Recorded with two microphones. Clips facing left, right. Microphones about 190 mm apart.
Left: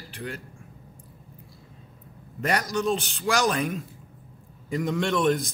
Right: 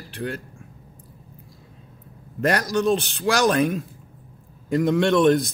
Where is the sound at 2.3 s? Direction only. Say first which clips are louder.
Right 5 dB; 70° right (ahead or behind).